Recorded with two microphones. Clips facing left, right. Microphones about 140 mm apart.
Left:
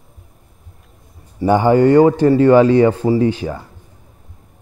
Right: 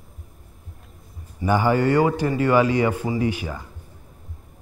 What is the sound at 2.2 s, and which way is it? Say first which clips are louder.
Speech: left 10 dB; 35° left (ahead or behind).